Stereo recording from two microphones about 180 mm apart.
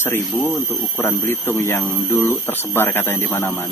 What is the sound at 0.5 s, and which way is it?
Speech, 10° left (ahead or behind).